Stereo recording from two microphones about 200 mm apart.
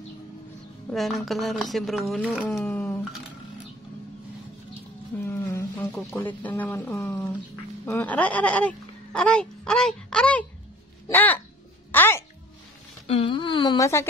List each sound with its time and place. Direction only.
0.9 s speech: centre (ahead or behind)
5.2 s speech: 10° left (ahead or behind)
11.9 s music: 10° left (ahead or behind)
13.0 s speech: 25° left (ahead or behind)